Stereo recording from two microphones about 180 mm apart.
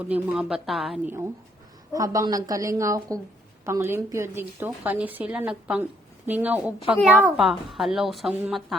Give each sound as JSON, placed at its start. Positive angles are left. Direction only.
{"t": 0.0, "sound": "a woman's voice", "side_deg": -5}
{"t": 1.9, "sound": "a woman's voice", "side_deg": -20}